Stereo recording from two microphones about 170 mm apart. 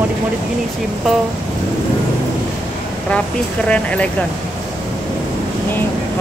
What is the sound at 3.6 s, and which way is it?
Speech, 5° left (ahead or behind).